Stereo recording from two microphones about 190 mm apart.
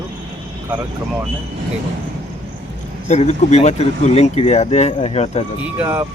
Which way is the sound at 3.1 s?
35° left (ahead or behind).